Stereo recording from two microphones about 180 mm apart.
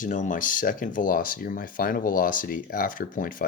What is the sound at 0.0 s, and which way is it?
Speech, 45° left (ahead or behind).